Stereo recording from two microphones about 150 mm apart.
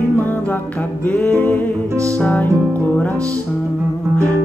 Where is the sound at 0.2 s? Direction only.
10° left (ahead or behind).